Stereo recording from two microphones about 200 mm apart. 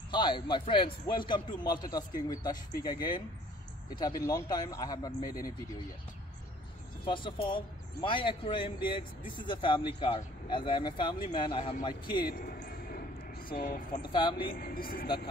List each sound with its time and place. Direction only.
0.1 s speech: 25° left (ahead or behind)
7.1 s speech: 25° left (ahead or behind)
12.3 s a sound: 45° left (ahead or behind)
13.5 s speech: 45° left (ahead or behind)
14.0 s speech: 25° left (ahead or behind)
14.5 s speech: 50° left (ahead or behind)